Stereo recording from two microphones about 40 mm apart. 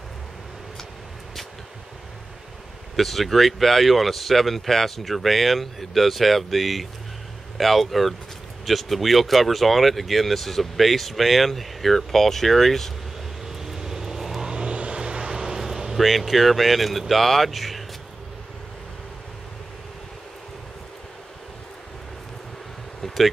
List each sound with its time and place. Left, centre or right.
3.0 s speech: centre
13.5 s vehicle: centre
14.5 s vehicle: right
15.3 s vehicle: centre
16.0 s speech: centre
23.0 s a sound: centre